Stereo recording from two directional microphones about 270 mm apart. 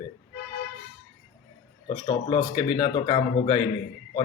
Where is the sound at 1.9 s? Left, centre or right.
Centre.